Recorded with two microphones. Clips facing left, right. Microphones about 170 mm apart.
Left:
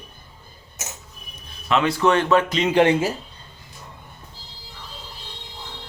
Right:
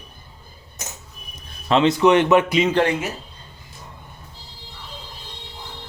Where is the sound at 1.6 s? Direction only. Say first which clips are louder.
Right 4 dB; 30° right (ahead or behind).